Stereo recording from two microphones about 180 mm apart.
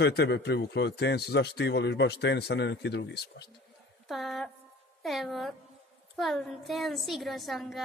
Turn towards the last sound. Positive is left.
turn(degrees=0)  # may be behind; listen again after turning